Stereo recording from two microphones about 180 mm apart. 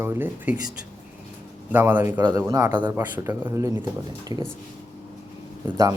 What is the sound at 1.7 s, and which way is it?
Speech, 10° right (ahead or behind).